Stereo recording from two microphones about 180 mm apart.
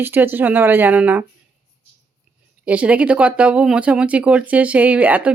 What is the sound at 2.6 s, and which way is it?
Speech, 5° right (ahead or behind).